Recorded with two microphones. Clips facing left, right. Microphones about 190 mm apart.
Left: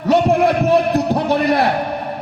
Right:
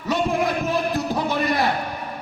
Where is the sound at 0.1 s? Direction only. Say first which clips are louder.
Left 8 dB; 65° left (ahead or behind).